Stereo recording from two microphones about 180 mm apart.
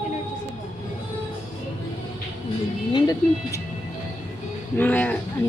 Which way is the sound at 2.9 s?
20° left (ahead or behind).